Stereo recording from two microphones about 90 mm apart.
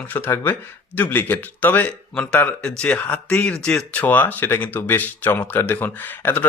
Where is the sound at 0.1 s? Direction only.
20° left (ahead or behind); by 3.8 s 5° left (ahead or behind).